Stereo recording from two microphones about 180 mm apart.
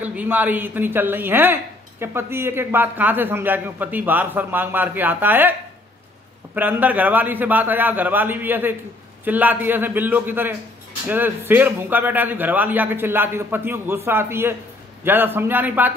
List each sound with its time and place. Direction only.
0.0 s a woman's voice: 10° right (ahead or behind)